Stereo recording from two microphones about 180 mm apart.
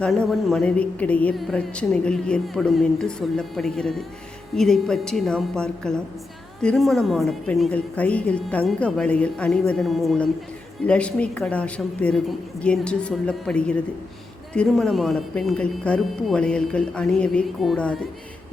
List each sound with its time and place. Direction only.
0.0 s a woman's voice: 5° left (ahead or behind)